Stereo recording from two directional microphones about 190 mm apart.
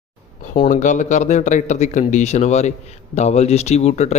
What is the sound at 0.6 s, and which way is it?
A man's voice, 40° left (ahead or behind).